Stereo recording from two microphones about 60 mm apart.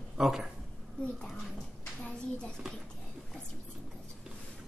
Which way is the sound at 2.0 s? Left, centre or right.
Centre.